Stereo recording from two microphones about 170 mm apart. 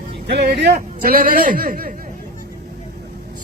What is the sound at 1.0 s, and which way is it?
Speech, 55° right (ahead or behind).